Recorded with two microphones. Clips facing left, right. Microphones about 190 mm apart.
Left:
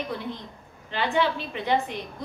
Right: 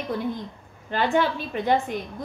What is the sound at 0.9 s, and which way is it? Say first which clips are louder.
A woman's voice: right 2 dB; 50° right (ahead or behind).